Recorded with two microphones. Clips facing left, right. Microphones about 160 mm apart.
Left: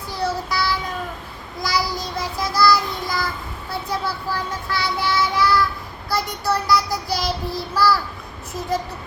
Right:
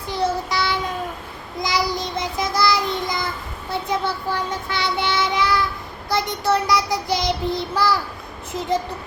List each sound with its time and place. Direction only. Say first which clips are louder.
0.1 s child singing: right 2 dB; 20° right (ahead or behind)